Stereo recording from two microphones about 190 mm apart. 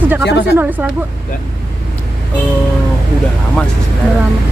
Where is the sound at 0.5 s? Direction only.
10° right (ahead or behind).